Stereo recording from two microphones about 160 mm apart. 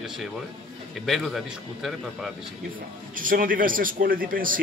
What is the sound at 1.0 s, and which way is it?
Speech, centre (ahead or behind).